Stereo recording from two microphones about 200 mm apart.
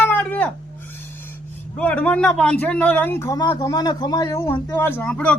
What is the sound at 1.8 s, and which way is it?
Speech, 5° left (ahead or behind).